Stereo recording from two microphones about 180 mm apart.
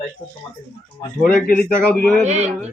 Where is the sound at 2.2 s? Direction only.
40° right (ahead or behind).